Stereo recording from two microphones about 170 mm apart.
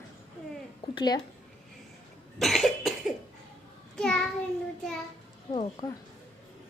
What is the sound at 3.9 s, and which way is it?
Child singing, 5° left (ahead or behind).